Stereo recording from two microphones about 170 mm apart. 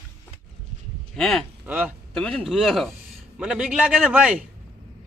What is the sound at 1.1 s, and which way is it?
Speech, 5° left (ahead or behind).